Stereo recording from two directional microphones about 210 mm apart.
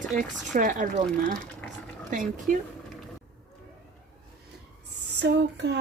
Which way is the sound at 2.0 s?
40° right (ahead or behind).